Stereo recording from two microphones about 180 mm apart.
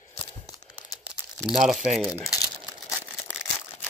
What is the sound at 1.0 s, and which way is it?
Crumpling, 5° right (ahead or behind).